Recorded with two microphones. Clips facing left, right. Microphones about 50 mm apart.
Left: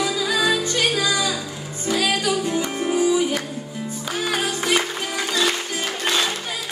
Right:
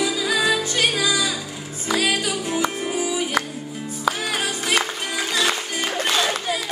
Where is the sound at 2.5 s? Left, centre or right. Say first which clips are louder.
Left 1 dB; centre.